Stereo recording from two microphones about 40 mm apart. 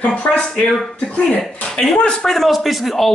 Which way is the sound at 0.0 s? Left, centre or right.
Left.